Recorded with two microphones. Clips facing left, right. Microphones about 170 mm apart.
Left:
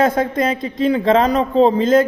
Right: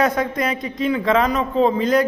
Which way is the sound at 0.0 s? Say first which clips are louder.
Left 3 dB; 25° left (ahead or behind).